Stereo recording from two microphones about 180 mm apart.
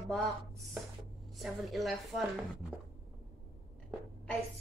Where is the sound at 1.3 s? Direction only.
Centre (ahead or behind).